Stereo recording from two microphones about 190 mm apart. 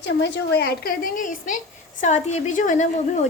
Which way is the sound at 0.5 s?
55° left (ahead or behind).